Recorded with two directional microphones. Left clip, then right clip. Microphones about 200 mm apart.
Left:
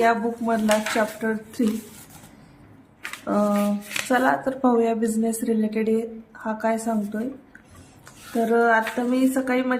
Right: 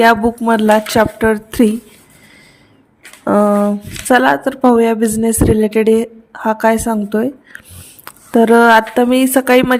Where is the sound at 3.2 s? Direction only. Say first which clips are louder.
Right 11 dB; 45° right (ahead or behind).